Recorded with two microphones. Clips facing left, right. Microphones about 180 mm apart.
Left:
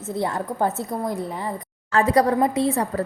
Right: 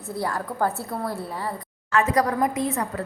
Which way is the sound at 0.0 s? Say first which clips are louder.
Left 3 dB; 20° left (ahead or behind).